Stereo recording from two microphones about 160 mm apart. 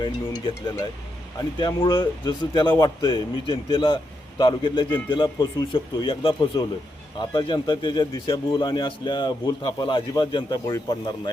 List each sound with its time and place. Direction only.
0.0 s a man's voice: 30° left (ahead or behind)